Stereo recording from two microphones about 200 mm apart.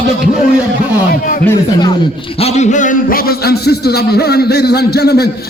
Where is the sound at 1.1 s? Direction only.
45° left (ahead or behind).